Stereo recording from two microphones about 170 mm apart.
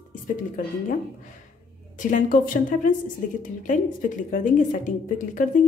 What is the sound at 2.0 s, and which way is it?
Speech, 50° left (ahead or behind).